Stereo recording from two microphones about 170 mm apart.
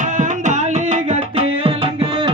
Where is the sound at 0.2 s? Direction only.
45° right (ahead or behind).